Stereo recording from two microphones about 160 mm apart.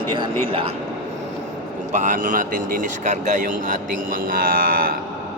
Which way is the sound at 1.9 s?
50° right (ahead or behind).